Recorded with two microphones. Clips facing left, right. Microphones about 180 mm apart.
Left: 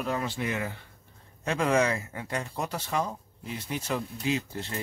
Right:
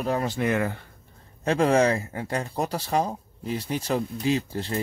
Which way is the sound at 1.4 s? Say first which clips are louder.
Right 5 dB; 35° right (ahead or behind).